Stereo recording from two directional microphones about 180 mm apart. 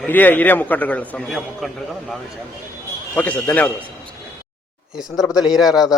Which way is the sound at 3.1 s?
10° left (ahead or behind).